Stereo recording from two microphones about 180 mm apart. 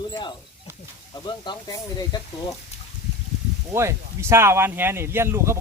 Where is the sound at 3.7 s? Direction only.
15° right (ahead or behind).